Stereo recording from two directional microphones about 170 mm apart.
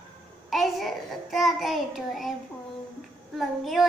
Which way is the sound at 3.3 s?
Centre (ahead or behind).